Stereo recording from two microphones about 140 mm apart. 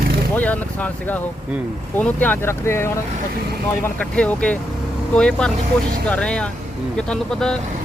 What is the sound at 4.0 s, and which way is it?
Speech, 10° left (ahead or behind).